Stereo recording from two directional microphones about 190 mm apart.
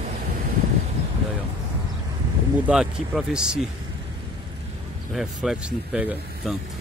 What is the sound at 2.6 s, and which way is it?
Speech, 5° right (ahead or behind).